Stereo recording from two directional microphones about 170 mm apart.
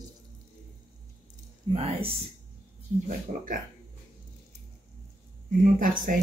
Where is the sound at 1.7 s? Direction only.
35° right (ahead or behind).